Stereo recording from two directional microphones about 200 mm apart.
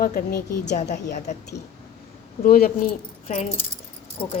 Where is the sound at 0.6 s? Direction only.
35° left (ahead or behind).